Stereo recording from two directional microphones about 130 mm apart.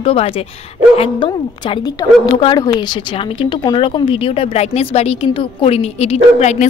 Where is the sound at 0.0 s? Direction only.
45° left (ahead or behind).